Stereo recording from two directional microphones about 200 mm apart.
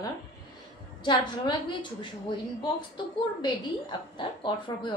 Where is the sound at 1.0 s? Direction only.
20° left (ahead or behind).